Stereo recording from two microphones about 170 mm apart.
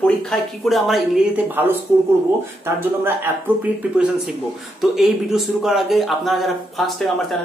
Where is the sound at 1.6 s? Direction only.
10° right (ahead or behind).